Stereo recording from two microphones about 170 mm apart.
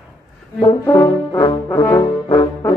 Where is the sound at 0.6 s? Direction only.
25° left (ahead or behind).